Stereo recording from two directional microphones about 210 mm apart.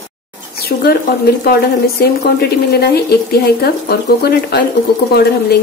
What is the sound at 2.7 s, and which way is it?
Speech, 50° left (ahead or behind).